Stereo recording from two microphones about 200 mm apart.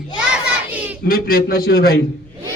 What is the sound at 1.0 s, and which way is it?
Speech, 45° left (ahead or behind).